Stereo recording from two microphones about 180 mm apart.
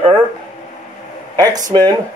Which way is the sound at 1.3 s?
20° right (ahead or behind).